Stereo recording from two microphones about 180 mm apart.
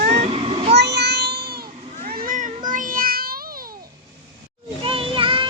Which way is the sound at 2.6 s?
45° right (ahead or behind).